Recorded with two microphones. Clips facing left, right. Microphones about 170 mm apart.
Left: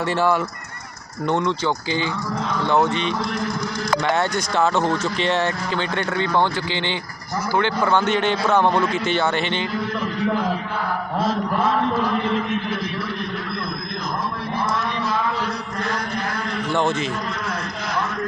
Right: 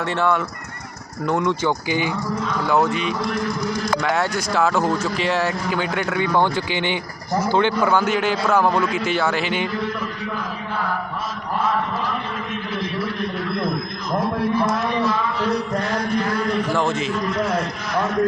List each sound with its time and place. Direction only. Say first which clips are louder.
1.5 s a man's voice: right 2 dB; 10° right (ahead or behind)
2.6 s a man's voice: even; centre (ahead or behind); by 7.7 s 20° right (ahead or behind)
7.9 s a man's voice: even; 5° right (ahead or behind)